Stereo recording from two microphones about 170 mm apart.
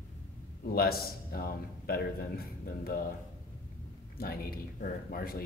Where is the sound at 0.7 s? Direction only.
60° left (ahead or behind).